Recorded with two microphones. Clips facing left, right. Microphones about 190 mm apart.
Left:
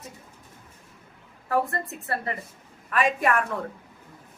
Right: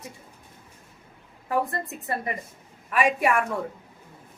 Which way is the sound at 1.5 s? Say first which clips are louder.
Left 1 dB; 15° right (ahead or behind).